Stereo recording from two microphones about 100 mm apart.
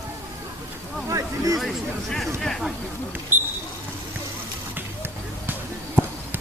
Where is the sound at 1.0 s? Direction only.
35° right (ahead or behind).